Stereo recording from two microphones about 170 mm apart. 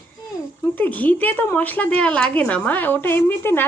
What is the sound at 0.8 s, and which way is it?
A woman's voice, 10° left (ahead or behind).